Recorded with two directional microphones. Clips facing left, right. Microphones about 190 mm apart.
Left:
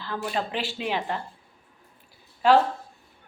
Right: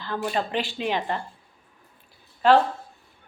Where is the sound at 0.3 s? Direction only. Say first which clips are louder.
Right 1 dB; 5° left (ahead or behind).